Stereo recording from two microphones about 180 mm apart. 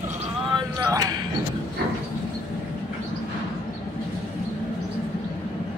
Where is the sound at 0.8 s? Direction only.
20° right (ahead or behind).